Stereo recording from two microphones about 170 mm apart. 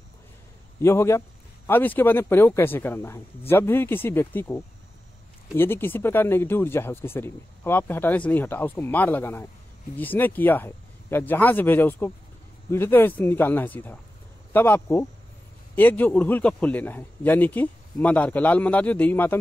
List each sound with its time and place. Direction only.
0.8 s a man's voice: 15° left (ahead or behind)